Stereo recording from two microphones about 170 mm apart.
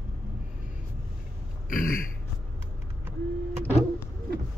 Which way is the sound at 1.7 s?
55° left (ahead or behind).